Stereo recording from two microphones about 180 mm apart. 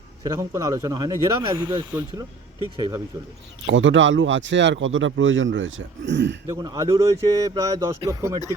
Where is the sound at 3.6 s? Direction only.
90° right.